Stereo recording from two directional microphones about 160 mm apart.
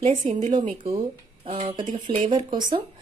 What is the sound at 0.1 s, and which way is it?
Speech, 55° right (ahead or behind).